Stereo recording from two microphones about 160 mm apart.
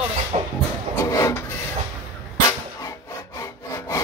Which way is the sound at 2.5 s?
20° left (ahead or behind).